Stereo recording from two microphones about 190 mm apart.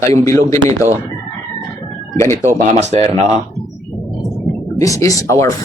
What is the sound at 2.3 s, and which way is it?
Speech, 40° right (ahead or behind).